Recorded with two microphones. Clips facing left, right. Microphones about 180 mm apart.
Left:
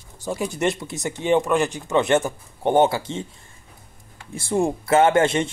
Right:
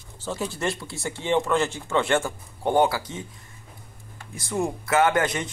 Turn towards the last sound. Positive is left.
turn(degrees=25)  # may be behind; listen again after turning